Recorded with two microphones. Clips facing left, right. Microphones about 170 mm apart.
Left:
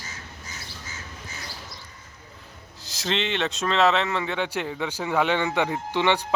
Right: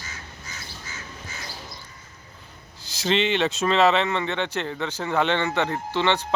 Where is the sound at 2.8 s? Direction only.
Centre (ahead or behind).